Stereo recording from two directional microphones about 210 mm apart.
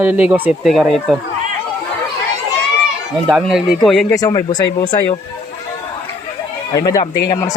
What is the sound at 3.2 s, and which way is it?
Speech, centre (ahead or behind).